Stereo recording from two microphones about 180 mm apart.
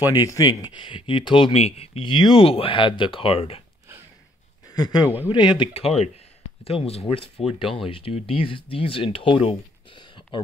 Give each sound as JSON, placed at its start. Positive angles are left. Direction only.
{"t": 0.1, "sound": "speech", "side_deg": 20}
{"t": 4.6, "sound": "speech", "side_deg": 20}
{"t": 5.0, "sound": "a man's voice", "side_deg": -10}
{"t": 5.3, "sound": "speech", "side_deg": 25}